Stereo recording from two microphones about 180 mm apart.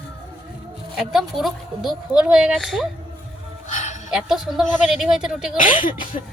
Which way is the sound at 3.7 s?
40° left (ahead or behind).